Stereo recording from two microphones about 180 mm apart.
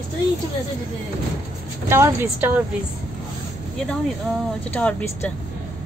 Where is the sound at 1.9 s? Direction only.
15° right (ahead or behind).